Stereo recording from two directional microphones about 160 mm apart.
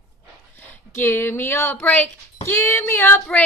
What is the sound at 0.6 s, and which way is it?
Speech, 15° left (ahead or behind).